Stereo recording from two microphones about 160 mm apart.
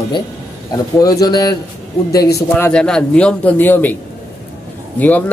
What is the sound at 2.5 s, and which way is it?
A man's voice, 5° left (ahead or behind).